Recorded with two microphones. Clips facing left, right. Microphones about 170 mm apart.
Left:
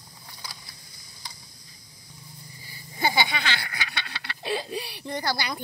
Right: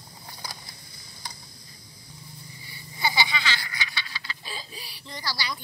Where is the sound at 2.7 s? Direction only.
50° left (ahead or behind).